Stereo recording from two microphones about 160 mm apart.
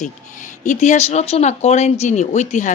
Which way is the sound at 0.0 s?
50° left (ahead or behind).